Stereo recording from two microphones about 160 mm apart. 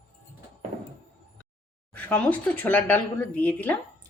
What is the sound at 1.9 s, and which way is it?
Speech, 10° left (ahead or behind).